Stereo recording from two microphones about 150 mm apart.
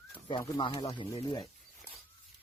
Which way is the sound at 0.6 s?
30° left (ahead or behind).